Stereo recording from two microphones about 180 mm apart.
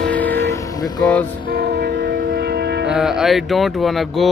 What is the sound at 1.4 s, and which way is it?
Vehicle, 60° right (ahead or behind).